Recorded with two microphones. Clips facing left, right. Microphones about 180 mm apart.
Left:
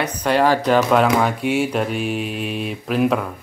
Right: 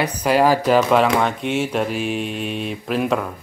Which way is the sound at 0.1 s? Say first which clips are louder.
Even; 10° right (ahead or behind).